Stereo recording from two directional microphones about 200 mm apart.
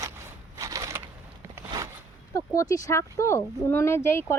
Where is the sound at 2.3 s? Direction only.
15° left (ahead or behind).